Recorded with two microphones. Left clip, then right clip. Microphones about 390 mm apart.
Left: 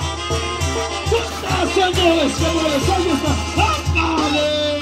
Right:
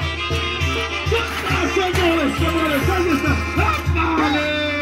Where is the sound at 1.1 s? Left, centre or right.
Centre.